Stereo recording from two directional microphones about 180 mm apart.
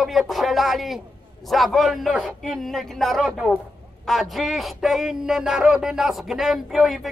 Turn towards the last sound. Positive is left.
turn(degrees=0)  # may be behind; listen again after turning